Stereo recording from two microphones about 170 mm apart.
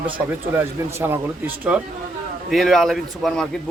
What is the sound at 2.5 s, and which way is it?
Speech, centre (ahead or behind).